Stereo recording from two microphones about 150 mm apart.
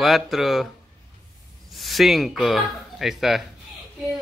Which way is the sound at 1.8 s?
Centre (ahead or behind).